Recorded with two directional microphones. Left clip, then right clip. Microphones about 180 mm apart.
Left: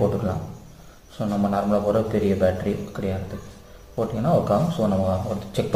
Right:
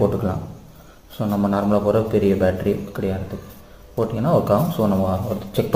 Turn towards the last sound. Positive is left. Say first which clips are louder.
# right 3 dB
turn(degrees=-35)  # may be behind; listen again after turning